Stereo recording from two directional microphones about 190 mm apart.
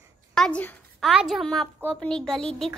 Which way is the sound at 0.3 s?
5° left (ahead or behind).